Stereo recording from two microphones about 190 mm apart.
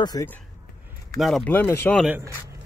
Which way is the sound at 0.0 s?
20° left (ahead or behind).